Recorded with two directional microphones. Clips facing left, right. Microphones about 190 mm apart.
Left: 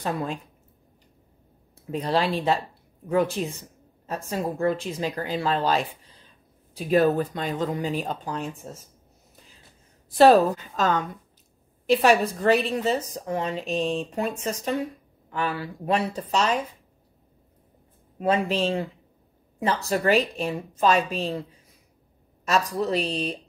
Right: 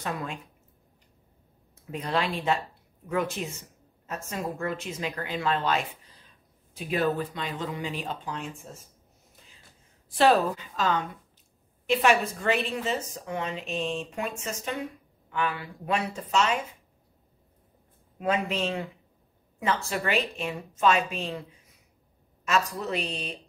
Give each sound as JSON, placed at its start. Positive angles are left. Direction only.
{"t": 0.0, "sound": "a woman's voice", "side_deg": 35}
{"t": 1.9, "sound": "a woman's voice", "side_deg": 35}
{"t": 10.1, "sound": "a woman's voice", "side_deg": 40}
{"t": 18.2, "sound": "a woman's voice", "side_deg": 35}
{"t": 22.4, "sound": "a woman's voice", "side_deg": 35}